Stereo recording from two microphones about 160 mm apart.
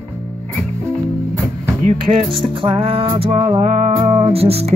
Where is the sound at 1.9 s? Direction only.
35° right (ahead or behind).